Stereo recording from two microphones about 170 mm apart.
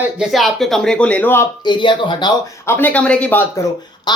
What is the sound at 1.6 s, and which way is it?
Speech, 30° left (ahead or behind).